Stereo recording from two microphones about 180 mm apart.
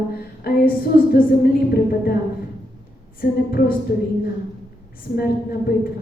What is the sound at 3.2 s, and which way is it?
Speech, 55° left (ahead or behind).